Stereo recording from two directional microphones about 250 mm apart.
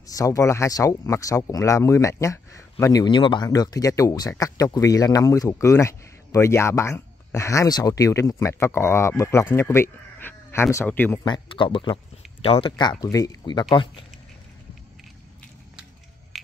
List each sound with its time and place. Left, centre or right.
0.0 s speech: centre
11.2 s speech: centre